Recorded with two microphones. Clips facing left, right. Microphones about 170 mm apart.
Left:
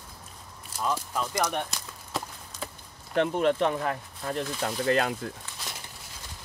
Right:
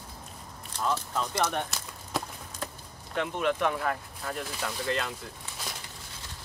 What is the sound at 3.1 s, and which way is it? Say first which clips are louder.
Speech: left 5 dB; 35° left (ahead or behind).